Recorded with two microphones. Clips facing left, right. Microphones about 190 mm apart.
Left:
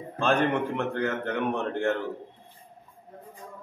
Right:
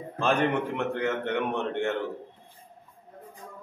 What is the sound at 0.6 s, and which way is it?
A man's voice, centre (ahead or behind).